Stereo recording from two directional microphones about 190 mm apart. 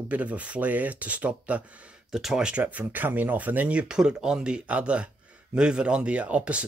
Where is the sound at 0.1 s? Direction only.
5° right (ahead or behind).